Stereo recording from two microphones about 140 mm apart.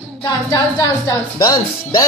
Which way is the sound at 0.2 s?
25° left (ahead or behind).